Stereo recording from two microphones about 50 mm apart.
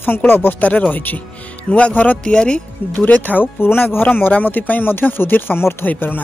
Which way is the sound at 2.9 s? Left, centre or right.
Left.